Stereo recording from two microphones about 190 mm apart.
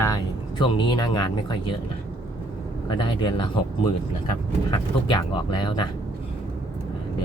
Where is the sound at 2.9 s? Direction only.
25° left (ahead or behind).